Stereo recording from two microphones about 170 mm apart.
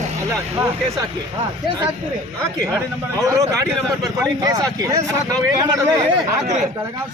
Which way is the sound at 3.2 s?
20° right (ahead or behind).